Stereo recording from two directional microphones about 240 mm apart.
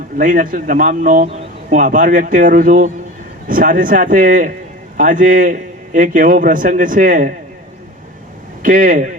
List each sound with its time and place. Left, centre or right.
0.2 s speech: right
8.6 s speech: right